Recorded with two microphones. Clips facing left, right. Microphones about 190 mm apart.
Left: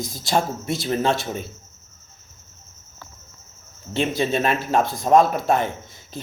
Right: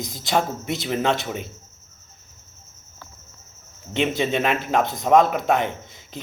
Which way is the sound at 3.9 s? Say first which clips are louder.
Even; 20° right (ahead or behind).